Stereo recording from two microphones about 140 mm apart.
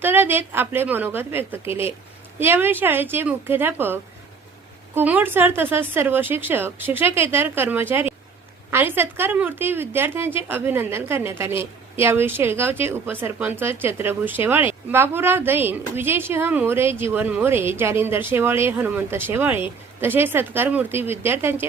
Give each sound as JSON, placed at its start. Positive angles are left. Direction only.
{"t": 0.0, "sound": "a woman's voice", "side_deg": -15}